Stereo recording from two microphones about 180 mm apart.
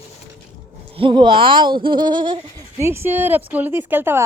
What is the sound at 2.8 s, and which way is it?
Speech, 15° right (ahead or behind).